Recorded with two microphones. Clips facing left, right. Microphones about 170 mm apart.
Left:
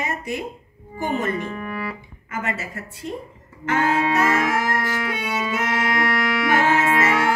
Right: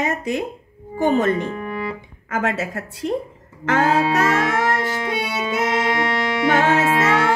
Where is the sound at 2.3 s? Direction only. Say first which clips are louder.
Right 6 dB; 90° right.